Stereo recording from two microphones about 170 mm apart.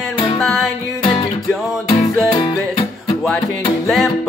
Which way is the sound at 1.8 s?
25° left (ahead or behind).